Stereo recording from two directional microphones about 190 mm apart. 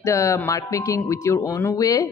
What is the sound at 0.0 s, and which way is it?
Speech, 15° left (ahead or behind).